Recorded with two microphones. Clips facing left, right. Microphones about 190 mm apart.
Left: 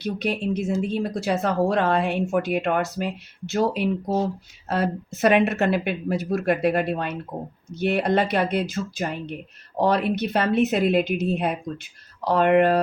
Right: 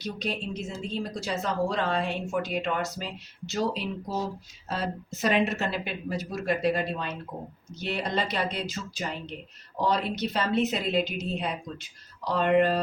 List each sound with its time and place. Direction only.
0.0 s speech: 60° left (ahead or behind)